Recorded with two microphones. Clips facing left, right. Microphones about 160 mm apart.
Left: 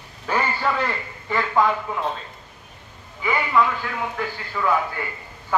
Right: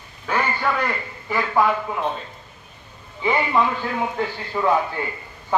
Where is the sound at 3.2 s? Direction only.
25° right (ahead or behind).